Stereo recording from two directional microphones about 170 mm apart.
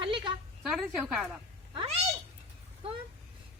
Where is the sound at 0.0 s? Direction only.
25° right (ahead or behind).